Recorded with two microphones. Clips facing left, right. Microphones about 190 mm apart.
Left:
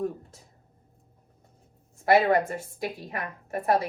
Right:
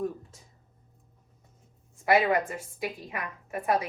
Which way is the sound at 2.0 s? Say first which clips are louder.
Left 3 dB; 35° left (ahead or behind).